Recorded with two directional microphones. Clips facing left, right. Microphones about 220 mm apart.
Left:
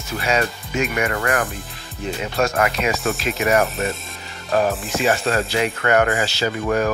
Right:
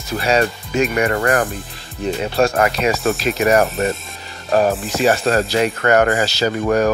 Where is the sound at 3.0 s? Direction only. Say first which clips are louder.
Right 4 dB; centre (ahead or behind).